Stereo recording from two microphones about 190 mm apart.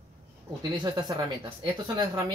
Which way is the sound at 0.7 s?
20° right (ahead or behind).